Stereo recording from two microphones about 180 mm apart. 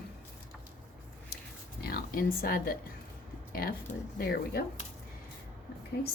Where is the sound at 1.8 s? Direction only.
55° left (ahead or behind).